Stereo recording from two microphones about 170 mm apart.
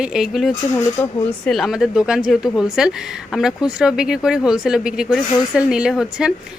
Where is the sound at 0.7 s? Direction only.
15° left (ahead or behind).